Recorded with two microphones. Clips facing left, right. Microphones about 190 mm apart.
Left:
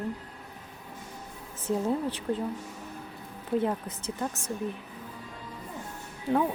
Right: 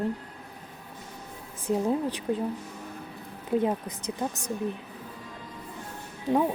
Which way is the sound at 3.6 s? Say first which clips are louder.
Right 2 dB; 15° right (ahead or behind).